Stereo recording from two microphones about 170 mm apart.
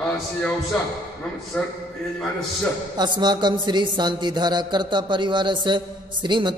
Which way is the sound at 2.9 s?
25° right (ahead or behind).